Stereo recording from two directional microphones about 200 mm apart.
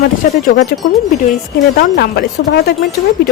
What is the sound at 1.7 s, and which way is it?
Speech, 50° left (ahead or behind).